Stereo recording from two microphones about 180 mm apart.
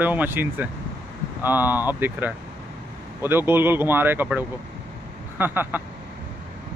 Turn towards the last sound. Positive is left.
turn(degrees=-10)  # may be behind; listen again after turning